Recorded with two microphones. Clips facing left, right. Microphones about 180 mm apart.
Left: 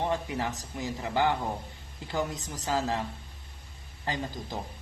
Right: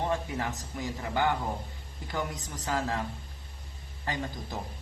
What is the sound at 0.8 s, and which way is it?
Speech, 20° left (ahead or behind).